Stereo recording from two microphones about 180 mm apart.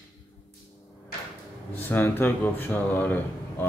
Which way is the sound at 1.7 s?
10° left (ahead or behind).